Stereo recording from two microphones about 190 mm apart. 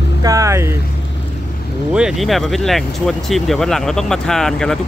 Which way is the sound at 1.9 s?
Centre (ahead or behind).